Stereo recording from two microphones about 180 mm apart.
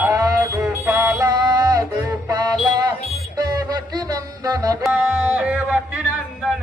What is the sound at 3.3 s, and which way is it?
Music, 20° right (ahead or behind).